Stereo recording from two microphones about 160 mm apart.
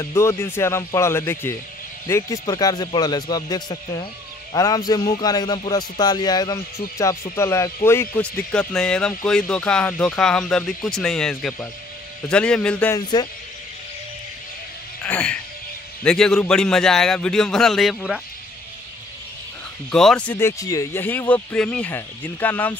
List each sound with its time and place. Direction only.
0.0 s a man's voice: 20° left (ahead or behind)
12.9 s a man's voice: 25° left (ahead or behind)
15.0 s speech: 5° left (ahead or behind)
19.9 s speech: 5° left (ahead or behind)